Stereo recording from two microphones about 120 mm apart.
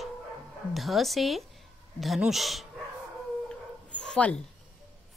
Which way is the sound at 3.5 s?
5° left (ahead or behind).